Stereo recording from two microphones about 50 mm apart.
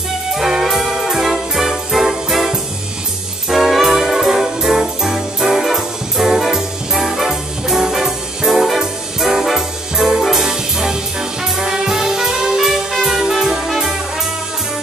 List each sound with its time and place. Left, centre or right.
0.3 s music: centre
11.4 s brass instrument: centre